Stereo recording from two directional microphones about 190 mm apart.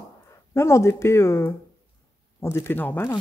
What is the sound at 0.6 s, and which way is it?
Speech, 15° left (ahead or behind).